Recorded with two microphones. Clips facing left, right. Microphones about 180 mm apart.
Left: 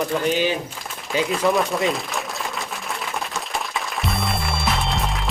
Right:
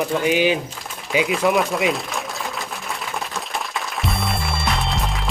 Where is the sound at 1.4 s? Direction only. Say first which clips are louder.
Even; centre (ahead or behind).